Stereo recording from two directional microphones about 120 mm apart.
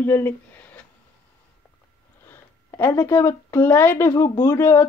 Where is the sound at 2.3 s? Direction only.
20° left (ahead or behind).